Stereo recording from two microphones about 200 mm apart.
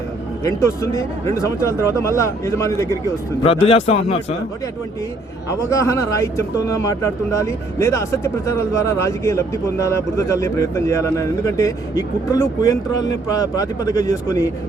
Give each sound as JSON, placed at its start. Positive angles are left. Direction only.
{"t": 0.4, "sound": "a man's voice", "side_deg": 15}
{"t": 3.4, "sound": "a man's voice", "side_deg": 30}
{"t": 5.5, "sound": "a man's voice", "side_deg": 15}